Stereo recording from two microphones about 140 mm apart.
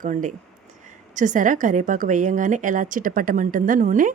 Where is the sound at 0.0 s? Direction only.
70° right (ahead or behind).